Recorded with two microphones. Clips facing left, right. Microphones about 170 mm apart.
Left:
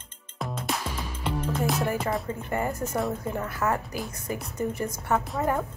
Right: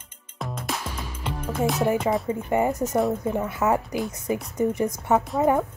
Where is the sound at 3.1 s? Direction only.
20° right (ahead or behind).